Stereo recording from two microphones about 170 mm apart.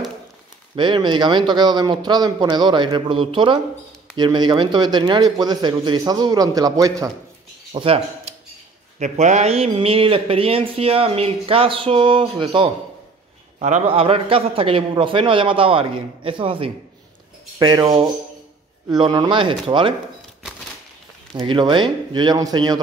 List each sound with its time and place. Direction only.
0.7 s a man's voice: 30° right (ahead or behind)
7.7 s speech: 35° right (ahead or behind)
13.6 s speech: 40° right (ahead or behind); by 17.8 s 25° right (ahead or behind)
17.8 s a man's voice: 35° right (ahead or behind)
21.3 s a man's voice: 30° right (ahead or behind)